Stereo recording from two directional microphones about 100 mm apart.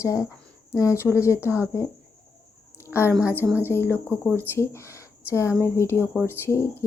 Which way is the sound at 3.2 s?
25° left (ahead or behind).